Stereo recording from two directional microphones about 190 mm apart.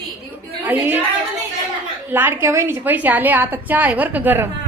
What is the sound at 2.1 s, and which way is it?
A woman's voice, 10° right (ahead or behind).